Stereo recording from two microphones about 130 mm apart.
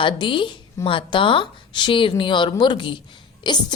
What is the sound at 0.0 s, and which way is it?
Speech, 40° left (ahead or behind).